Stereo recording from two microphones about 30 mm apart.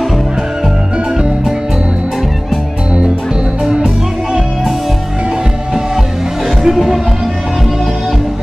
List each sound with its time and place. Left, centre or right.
1.1 s music: right
6.6 s music: centre